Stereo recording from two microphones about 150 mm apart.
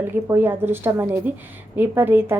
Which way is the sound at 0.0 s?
15° right (ahead or behind).